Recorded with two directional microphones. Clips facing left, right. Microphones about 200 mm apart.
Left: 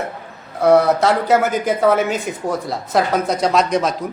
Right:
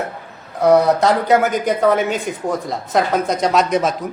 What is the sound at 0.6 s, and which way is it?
Speech, centre (ahead or behind).